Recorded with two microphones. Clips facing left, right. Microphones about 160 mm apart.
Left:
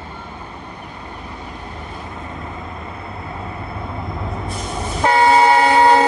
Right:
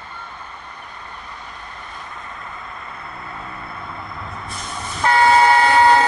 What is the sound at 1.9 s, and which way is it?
Vehicle, 25° left (ahead or behind).